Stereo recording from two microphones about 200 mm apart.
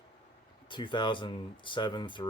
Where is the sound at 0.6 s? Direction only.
25° left (ahead or behind).